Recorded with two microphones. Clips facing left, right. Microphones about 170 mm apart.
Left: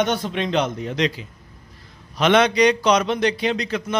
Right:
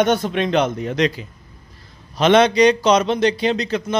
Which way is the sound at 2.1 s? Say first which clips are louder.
Right 3 dB; 30° right (ahead or behind).